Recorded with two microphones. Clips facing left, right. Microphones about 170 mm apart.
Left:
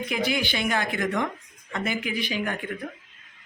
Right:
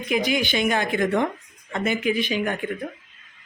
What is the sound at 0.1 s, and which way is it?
A man's voice, 20° right (ahead or behind).